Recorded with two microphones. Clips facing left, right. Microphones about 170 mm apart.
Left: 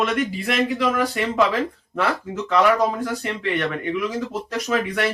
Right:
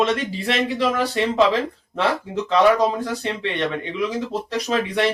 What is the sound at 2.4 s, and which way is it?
A man's voice, 25° right (ahead or behind).